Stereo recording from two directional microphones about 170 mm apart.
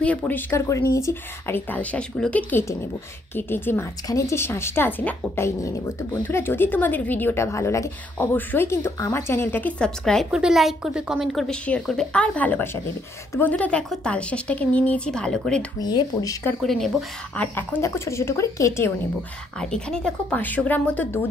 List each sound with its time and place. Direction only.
0.0 s a woman's voice: 10° left (ahead or behind)
15.8 s speech: 25° left (ahead or behind)
16.6 s speech: centre (ahead or behind)
17.4 s a woman's voice: 10° left (ahead or behind)
19.6 s a woman's voice: 5° left (ahead or behind)